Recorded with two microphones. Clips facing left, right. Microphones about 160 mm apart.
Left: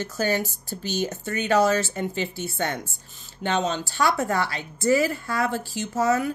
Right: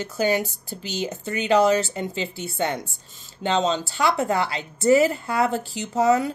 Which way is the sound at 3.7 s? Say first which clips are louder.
Right 1 dB; 20° right (ahead or behind).